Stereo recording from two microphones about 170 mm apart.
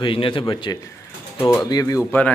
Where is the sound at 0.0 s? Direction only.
30° left (ahead or behind).